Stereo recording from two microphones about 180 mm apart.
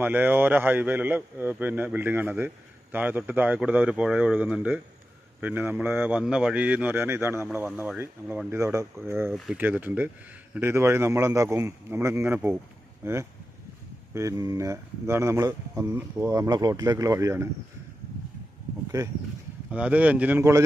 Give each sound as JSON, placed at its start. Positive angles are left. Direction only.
{"t": 0.0, "sound": "a man's voice", "side_deg": -10}
{"t": 9.3, "sound": "speech", "side_deg": 0}
{"t": 9.6, "sound": "a man's voice", "side_deg": -10}
{"t": 19.7, "sound": "a man's voice", "side_deg": -5}